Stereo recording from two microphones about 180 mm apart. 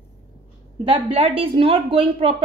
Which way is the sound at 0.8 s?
30° right (ahead or behind).